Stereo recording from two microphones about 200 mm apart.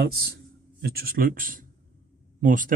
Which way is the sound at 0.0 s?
50° right (ahead or behind).